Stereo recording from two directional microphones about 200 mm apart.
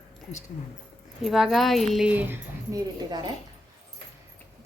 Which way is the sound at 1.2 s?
Centre (ahead or behind).